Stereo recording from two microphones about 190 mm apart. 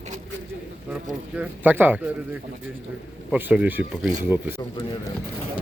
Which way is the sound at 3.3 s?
10° right (ahead or behind).